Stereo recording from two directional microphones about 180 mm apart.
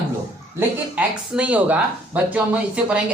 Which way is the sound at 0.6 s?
15° right (ahead or behind).